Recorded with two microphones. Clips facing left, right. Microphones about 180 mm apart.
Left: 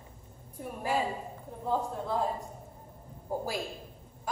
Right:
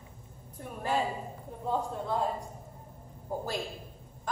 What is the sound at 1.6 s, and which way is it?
Speech, centre (ahead or behind).